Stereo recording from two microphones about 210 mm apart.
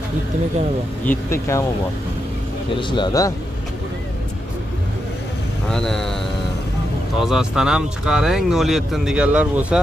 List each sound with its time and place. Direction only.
1.0 s speech: 15° left (ahead or behind)
2.8 s speech: 20° left (ahead or behind)
5.7 s speech: centre (ahead or behind)
7.2 s speech: centre (ahead or behind)